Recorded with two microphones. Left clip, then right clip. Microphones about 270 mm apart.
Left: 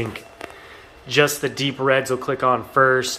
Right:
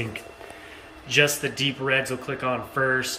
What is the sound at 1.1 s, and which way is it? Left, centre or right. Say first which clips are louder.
Speech: left 3 dB; centre.